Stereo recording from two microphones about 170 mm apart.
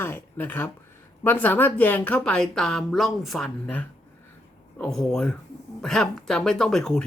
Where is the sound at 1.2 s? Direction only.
10° left (ahead or behind).